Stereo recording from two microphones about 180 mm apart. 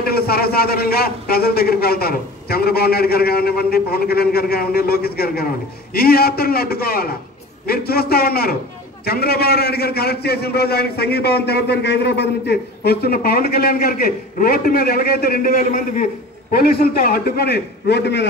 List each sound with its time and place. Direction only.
0.0 s a man's voice: 60° left (ahead or behind)
16.5 s a man's voice: 55° left (ahead or behind)